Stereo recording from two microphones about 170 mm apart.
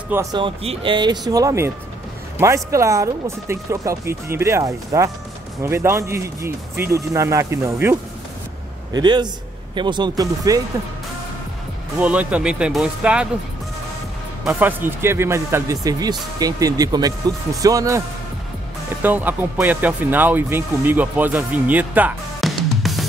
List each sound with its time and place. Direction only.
0.1 s speech: 20° right (ahead or behind)
0.4 s speech: 30° right (ahead or behind)
12.0 s speech: 5° right (ahead or behind)
14.4 s speech: 10° right (ahead or behind)
19.0 s speech: 10° right (ahead or behind)